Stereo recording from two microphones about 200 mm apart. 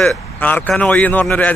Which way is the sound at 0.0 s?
5° left (ahead or behind).